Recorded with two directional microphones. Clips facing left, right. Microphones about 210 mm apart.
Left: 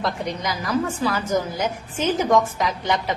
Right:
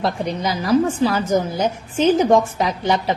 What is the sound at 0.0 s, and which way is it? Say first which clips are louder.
A woman's voice: right 4 dB; 30° right (ahead or behind).